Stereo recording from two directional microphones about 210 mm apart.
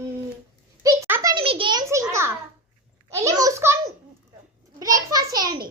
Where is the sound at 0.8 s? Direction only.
10° right (ahead or behind).